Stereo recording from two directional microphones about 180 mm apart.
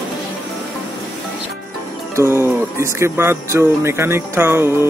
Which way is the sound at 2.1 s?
15° right (ahead or behind).